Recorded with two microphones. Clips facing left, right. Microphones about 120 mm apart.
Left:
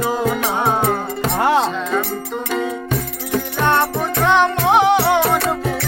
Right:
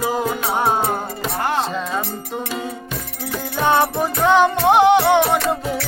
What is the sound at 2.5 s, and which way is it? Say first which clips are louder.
Music: left 6 dB; 50° left (ahead or behind).